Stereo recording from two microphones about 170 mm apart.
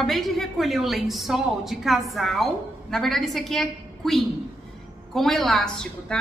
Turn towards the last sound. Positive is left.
turn(degrees=5)  # may be behind; listen again after turning